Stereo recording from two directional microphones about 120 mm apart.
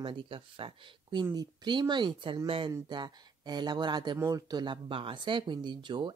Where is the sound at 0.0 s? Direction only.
45° right (ahead or behind).